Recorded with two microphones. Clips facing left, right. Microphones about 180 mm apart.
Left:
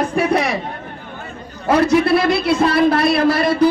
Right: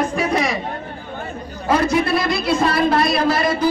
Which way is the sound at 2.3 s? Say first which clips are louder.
Left 3 dB; 65° left (ahead or behind).